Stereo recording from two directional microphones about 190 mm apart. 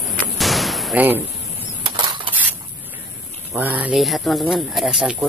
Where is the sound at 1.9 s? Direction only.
25° right (ahead or behind).